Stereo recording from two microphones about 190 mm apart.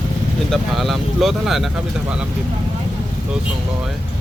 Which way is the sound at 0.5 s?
Centre (ahead or behind).